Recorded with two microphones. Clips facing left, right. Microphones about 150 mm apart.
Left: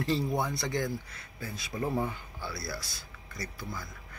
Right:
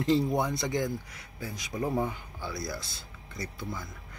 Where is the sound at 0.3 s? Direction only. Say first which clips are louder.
Right 2 dB; 20° right (ahead or behind).